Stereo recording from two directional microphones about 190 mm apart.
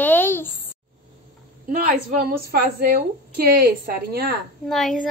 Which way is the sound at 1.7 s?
50° right (ahead or behind).